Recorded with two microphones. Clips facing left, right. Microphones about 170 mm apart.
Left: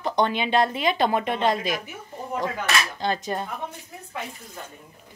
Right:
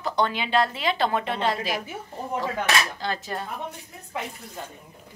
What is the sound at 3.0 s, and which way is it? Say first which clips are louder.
Dishes: left 4 dB; 20° left (ahead or behind).